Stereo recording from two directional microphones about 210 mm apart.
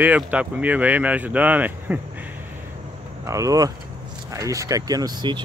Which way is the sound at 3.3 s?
15° right (ahead or behind).